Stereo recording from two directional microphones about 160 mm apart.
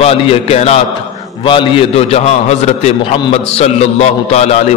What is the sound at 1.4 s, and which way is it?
A man's voice, 30° left (ahead or behind).